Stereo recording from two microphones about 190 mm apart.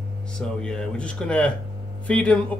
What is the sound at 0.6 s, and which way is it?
Speech, 5° left (ahead or behind).